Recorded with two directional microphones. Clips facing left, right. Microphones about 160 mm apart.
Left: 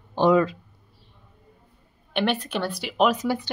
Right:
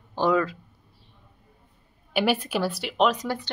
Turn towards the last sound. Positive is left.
turn(degrees=5)  # may be behind; listen again after turning